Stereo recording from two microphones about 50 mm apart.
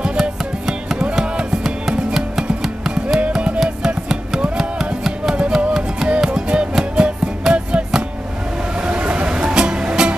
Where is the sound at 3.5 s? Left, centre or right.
Centre.